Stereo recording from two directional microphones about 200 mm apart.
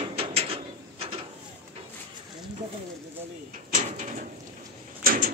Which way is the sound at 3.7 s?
35° right (ahead or behind).